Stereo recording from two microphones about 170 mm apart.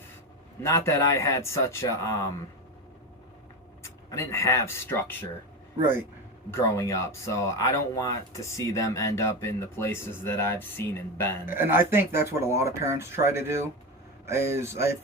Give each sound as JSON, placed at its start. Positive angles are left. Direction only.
{"t": 0.6, "sound": "speech", "side_deg": 15}
{"t": 3.8, "sound": "speech", "side_deg": 15}
{"t": 5.8, "sound": "speech", "side_deg": -10}
{"t": 6.5, "sound": "speech", "side_deg": 15}
{"t": 11.4, "sound": "speech", "side_deg": -10}